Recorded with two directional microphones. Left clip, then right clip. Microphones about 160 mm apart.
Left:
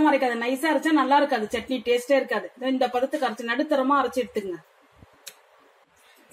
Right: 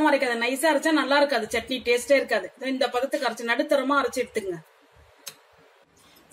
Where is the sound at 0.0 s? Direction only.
30° left (ahead or behind).